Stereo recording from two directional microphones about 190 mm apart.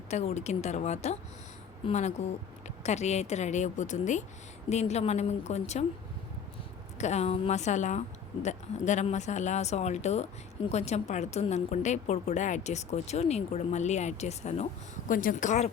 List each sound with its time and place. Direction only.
0.1 s a woman's voice: 35° left (ahead or behind)
7.0 s a woman's voice: 35° left (ahead or behind)